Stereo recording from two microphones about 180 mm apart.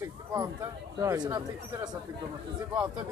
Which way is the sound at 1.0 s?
20° right (ahead or behind).